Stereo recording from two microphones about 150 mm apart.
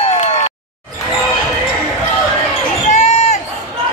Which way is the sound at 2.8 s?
50° left (ahead or behind).